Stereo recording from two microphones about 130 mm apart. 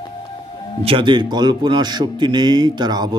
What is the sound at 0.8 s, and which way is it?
A man's voice, 40° right (ahead or behind).